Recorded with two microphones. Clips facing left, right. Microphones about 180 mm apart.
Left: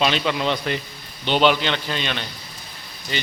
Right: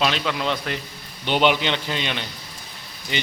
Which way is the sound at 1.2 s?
15° right (ahead or behind).